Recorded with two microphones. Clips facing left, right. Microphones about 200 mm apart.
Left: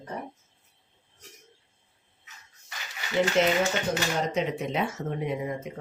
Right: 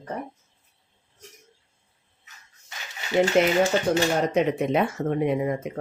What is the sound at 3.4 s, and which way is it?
Speech, 55° right (ahead or behind).